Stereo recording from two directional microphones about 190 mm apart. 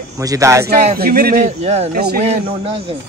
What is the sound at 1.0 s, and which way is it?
Speech, 55° right (ahead or behind).